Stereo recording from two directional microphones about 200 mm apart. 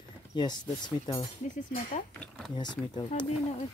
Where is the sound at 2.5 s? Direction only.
20° left (ahead or behind).